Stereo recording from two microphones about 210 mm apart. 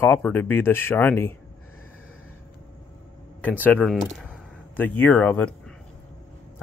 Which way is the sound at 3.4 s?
10° left (ahead or behind).